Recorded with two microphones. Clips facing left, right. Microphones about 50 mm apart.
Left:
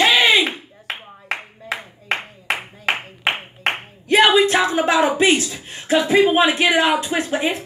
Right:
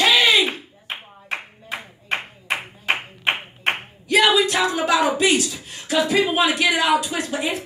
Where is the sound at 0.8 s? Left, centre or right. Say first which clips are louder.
Left 6 dB; left.